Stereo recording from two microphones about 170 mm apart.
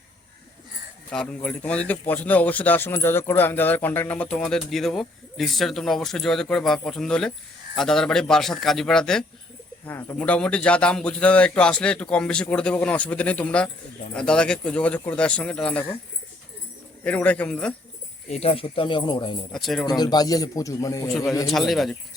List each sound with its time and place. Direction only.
1.1 s speech: 5° left (ahead or behind)
9.8 s a man's voice: 15° left (ahead or behind)
17.0 s a man's voice: 10° left (ahead or behind)
18.3 s speech: 35° left (ahead or behind)
19.5 s speech: centre (ahead or behind)
19.8 s a man's voice: 25° left (ahead or behind)
21.4 s speech: centre (ahead or behind)